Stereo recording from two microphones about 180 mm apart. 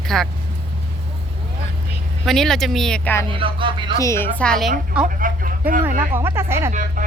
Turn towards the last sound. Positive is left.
turn(degrees=-45)  # may be behind; listen again after turning